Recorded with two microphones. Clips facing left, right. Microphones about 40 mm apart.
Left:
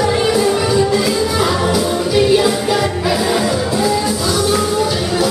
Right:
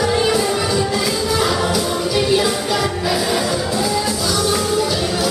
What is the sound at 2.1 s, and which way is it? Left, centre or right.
Music, centre.